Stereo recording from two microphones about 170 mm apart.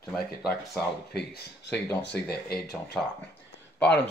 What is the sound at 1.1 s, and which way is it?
Speech, 80° left.